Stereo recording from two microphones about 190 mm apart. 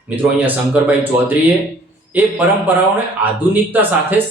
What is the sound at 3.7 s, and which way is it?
Speech, 10° right (ahead or behind).